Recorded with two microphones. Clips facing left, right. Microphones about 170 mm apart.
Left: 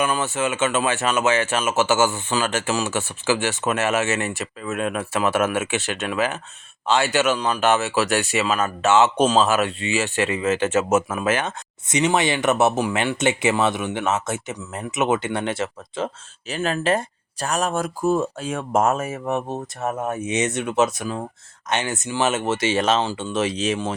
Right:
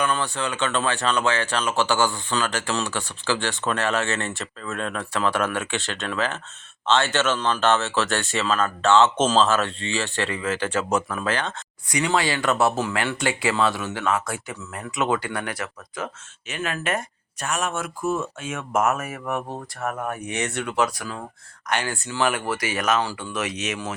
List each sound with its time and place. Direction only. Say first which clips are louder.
0.2 s speech: left 4 dB; 20° left (ahead or behind)